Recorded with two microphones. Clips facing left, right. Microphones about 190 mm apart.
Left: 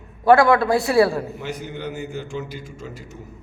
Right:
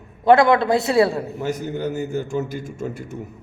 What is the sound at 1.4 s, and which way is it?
A man's voice, 45° right (ahead or behind).